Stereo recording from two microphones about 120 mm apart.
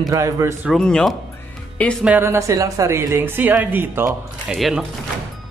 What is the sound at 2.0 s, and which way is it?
A woman's voice, 15° right (ahead or behind).